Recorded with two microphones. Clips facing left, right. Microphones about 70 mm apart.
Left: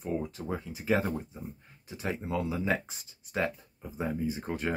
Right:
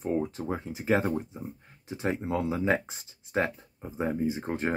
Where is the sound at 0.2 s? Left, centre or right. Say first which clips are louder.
Right 3 dB; right.